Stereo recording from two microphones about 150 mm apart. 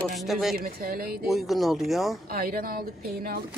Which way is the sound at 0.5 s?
75° right (ahead or behind).